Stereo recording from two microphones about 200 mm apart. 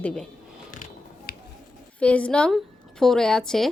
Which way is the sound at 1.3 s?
50° left (ahead or behind).